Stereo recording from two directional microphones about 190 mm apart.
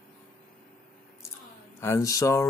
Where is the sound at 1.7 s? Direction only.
15° left (ahead or behind).